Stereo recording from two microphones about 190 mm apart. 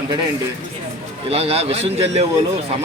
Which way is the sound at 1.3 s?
30° right (ahead or behind).